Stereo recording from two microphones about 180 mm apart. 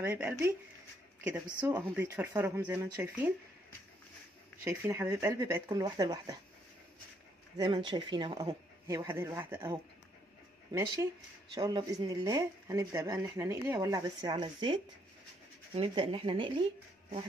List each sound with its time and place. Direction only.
0.0 s speech: 10° right (ahead or behind)
4.6 s speech: 15° right (ahead or behind)
7.5 s speech: 25° right (ahead or behind)
11.5 s speech: 25° right (ahead or behind)